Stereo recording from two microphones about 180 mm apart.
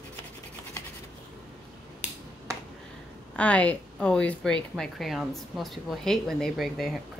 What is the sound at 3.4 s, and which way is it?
Speech, 10° left (ahead or behind).